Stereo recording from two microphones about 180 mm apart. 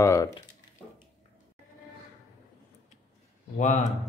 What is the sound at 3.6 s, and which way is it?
Speech, 40° left (ahead or behind).